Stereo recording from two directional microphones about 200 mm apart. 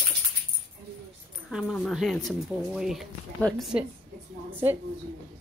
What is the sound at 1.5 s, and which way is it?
A woman's voice, centre (ahead or behind).